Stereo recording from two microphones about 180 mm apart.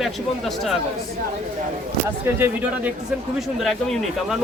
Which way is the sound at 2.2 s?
10° right (ahead or behind).